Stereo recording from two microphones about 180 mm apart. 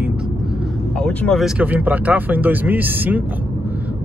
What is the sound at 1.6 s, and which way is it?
Speech, 10° right (ahead or behind).